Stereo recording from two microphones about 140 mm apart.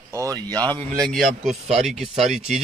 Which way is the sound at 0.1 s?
25° right (ahead or behind).